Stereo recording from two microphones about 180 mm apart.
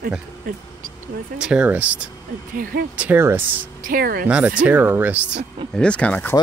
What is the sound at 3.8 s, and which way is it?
Speech, 55° right (ahead or behind).